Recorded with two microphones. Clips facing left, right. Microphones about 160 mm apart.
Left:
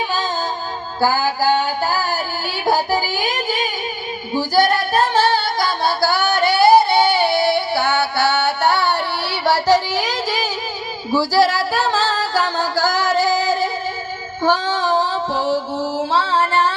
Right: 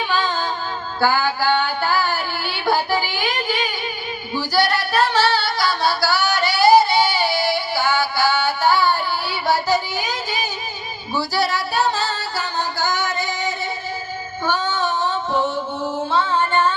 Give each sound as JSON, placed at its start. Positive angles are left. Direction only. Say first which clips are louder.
{"t": 1.0, "sound": "music", "louder": "left 2 dB", "side_deg": 40}
{"t": 2.6, "sound": "child singing", "louder": "left 2 dB", "side_deg": 40}
{"t": 4.4, "sound": "singing", "louder": "left 4 dB", "side_deg": 50}
{"t": 11.1, "sound": "music", "louder": "left 6 dB", "side_deg": 90}
{"t": 14.4, "sound": "female singing", "louder": "left 4 dB", "side_deg": 90}
{"t": 15.1, "sound": "music", "louder": "even", "side_deg": 35}
{"t": 16.4, "sound": "music", "louder": "left 1 dB", "side_deg": 90}